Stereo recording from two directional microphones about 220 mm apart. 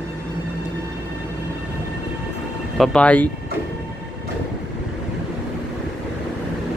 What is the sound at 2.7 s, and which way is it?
Speech, centre (ahead or behind).